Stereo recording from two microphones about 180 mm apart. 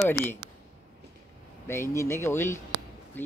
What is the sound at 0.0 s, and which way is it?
Speech, 10° left (ahead or behind).